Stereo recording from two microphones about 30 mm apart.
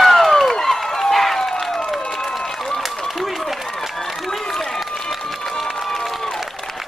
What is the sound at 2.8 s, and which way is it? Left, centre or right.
Run, centre.